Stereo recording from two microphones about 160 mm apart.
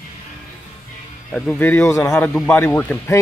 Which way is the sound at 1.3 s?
10° left (ahead or behind).